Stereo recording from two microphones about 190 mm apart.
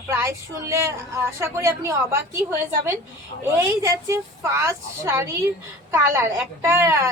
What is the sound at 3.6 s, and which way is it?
A woman's voice, 15° right (ahead or behind).